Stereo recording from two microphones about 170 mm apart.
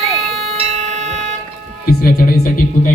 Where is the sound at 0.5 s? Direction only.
35° right (ahead or behind).